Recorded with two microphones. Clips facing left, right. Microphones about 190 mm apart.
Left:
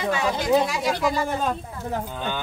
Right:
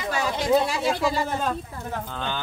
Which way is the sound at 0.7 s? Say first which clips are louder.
Even; 30° right (ahead or behind).